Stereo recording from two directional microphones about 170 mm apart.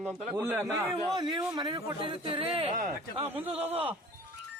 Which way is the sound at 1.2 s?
25° right (ahead or behind).